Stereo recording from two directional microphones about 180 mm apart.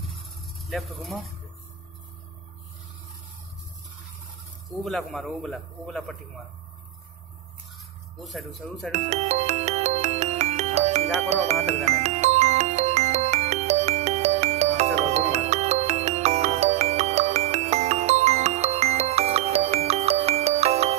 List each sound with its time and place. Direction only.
0.7 s speech: centre (ahead or behind)
4.8 s speech: centre (ahead or behind)
8.2 s speech: centre (ahead or behind)
8.9 s music: 35° right (ahead or behind)